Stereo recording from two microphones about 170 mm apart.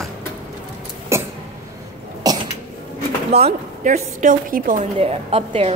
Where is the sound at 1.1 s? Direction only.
15° right (ahead or behind).